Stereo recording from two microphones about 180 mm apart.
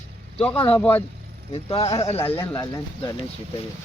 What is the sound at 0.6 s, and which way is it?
Speech, 10° left (ahead or behind).